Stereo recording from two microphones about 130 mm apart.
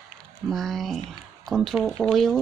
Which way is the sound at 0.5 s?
Centre (ahead or behind).